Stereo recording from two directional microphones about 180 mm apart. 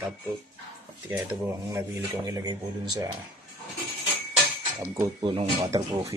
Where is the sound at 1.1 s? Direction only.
10° right (ahead or behind).